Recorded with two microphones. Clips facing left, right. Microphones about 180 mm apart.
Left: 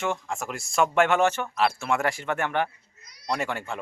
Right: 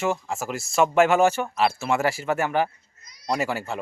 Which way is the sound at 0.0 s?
5° right (ahead or behind).